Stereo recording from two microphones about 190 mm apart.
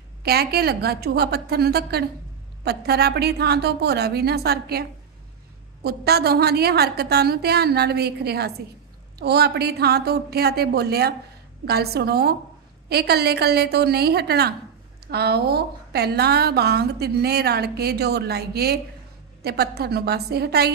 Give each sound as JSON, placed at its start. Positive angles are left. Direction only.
{"t": 0.2, "sound": "a woman's voice", "side_deg": -55}